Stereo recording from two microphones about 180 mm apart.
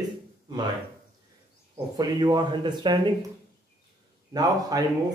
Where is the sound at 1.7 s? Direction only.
20° right (ahead or behind).